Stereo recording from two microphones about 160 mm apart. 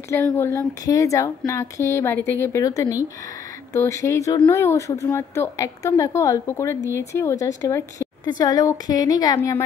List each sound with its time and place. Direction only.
0.1 s a woman's voice: 15° left (ahead or behind)